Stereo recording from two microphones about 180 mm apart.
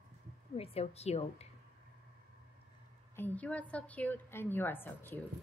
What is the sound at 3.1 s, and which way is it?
A woman's voice, 10° left (ahead or behind).